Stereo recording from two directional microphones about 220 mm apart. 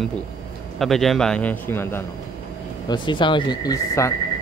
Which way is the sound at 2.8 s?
20° left (ahead or behind).